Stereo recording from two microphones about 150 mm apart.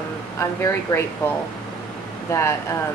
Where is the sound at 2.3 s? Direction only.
20° left (ahead or behind).